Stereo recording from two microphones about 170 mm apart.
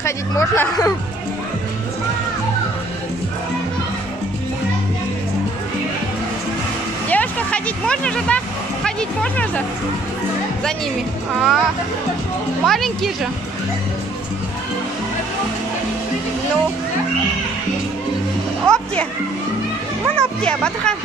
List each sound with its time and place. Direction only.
0.0 s speech: 15° left (ahead or behind)
7.1 s speech: 10° left (ahead or behind)
11.3 s speech: centre (ahead or behind)
12.6 s speech: centre (ahead or behind)
18.7 s music: 5° left (ahead or behind)
20.2 s speech: 5° left (ahead or behind)